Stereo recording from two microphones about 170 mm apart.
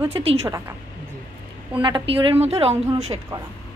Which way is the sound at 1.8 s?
30° right (ahead or behind).